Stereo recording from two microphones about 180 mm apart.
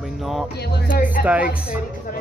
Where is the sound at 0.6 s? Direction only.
65° left (ahead or behind).